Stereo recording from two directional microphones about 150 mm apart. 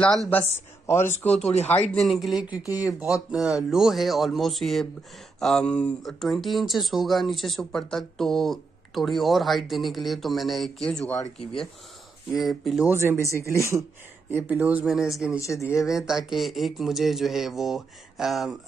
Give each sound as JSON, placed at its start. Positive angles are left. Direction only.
{"t": 0.8, "sound": "speech", "side_deg": 15}
{"t": 1.3, "sound": "speech", "side_deg": 45}
{"t": 1.9, "sound": "speech", "side_deg": 0}
{"t": 12.9, "sound": "speech", "side_deg": -15}
{"t": 13.2, "sound": "speech", "side_deg": 20}
{"t": 13.6, "sound": "speech", "side_deg": -20}
{"t": 15.4, "sound": "speech", "side_deg": 20}
{"t": 15.7, "sound": "speech", "side_deg": 0}